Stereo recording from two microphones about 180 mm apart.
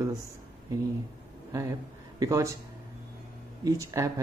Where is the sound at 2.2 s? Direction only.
15° right (ahead or behind).